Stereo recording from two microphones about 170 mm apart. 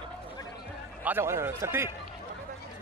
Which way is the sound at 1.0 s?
15° right (ahead or behind).